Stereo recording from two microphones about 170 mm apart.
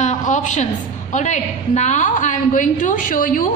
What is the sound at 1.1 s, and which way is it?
A woman's voice, 45° left (ahead or behind).